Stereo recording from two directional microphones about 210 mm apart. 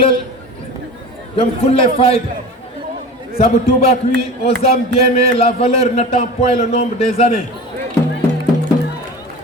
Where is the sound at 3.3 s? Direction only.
30° left (ahead or behind).